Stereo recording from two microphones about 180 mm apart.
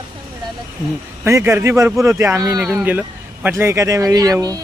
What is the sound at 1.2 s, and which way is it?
Speech, 15° right (ahead or behind).